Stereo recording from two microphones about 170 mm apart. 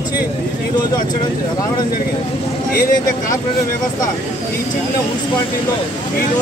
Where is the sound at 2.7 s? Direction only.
50° left (ahead or behind).